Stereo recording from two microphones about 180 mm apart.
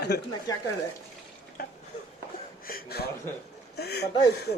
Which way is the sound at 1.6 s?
55° left (ahead or behind).